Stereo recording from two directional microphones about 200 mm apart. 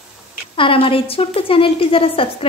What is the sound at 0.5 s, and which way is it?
A woman's voice, 25° left (ahead or behind).